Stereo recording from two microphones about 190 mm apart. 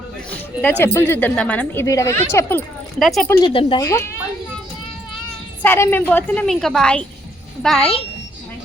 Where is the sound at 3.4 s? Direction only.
25° left (ahead or behind).